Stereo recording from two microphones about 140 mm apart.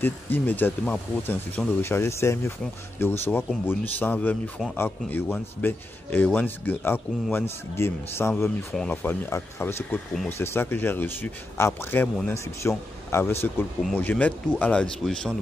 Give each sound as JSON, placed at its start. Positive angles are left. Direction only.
{"t": 0.0, "sound": "speech", "side_deg": 15}